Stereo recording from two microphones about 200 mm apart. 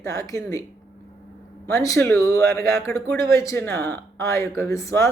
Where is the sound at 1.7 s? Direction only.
15° left (ahead or behind).